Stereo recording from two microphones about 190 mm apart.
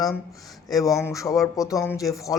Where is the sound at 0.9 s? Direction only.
15° left (ahead or behind).